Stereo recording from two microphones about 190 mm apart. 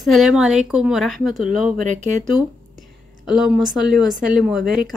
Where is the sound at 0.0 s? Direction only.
Centre (ahead or behind).